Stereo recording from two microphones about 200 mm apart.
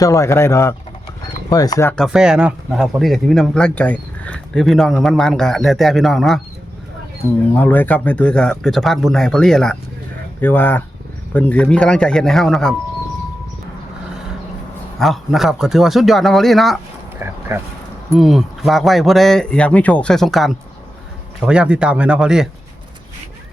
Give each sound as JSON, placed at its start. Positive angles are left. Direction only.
{"t": 0.0, "sound": "speech", "side_deg": 15}
{"t": 2.0, "sound": "speech", "side_deg": -5}
{"t": 7.5, "sound": "speech", "side_deg": 10}
{"t": 14.9, "sound": "speech", "side_deg": 0}
{"t": 17.2, "sound": "a sound", "side_deg": -15}
{"t": 18.2, "sound": "speech", "side_deg": 0}